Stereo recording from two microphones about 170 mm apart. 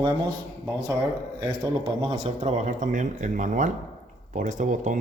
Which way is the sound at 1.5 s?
35° right (ahead or behind).